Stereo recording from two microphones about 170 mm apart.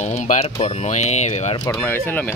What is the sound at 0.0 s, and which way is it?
Speech, 45° left (ahead or behind).